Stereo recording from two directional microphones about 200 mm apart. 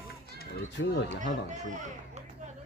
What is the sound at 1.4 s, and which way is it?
Speech, 35° right (ahead or behind).